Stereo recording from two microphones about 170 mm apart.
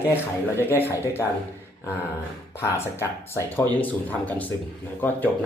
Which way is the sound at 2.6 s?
15° left (ahead or behind).